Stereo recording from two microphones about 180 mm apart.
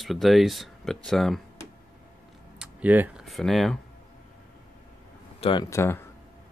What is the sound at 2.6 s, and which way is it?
Speech, 10° right (ahead or behind).